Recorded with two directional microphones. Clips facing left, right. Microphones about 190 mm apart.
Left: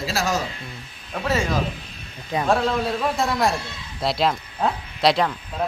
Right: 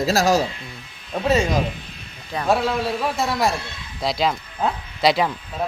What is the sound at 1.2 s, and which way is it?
Speech, 20° right (ahead or behind).